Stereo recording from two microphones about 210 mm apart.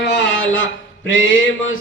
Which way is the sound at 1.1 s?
65° left (ahead or behind).